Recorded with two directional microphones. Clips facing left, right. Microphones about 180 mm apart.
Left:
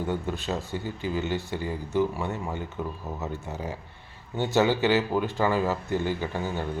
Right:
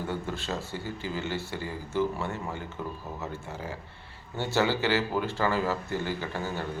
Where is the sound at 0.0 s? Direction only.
15° left (ahead or behind).